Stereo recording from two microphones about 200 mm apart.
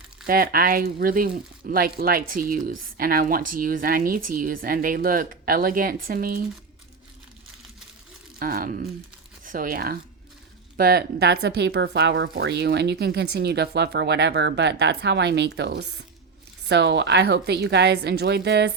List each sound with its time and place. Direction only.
0.3 s speech: 45° right (ahead or behind)
8.4 s speech: 45° right (ahead or behind)